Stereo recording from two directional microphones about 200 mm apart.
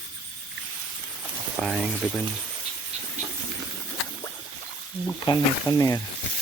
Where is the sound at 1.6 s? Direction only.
Centre (ahead or behind).